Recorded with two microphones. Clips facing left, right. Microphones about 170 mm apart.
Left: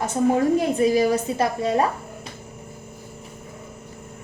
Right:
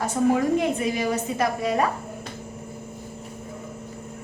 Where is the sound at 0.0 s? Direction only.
35° left (ahead or behind).